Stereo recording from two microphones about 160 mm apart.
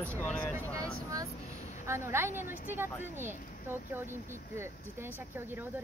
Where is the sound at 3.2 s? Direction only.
15° right (ahead or behind).